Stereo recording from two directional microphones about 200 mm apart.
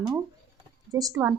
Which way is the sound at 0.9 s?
15° right (ahead or behind).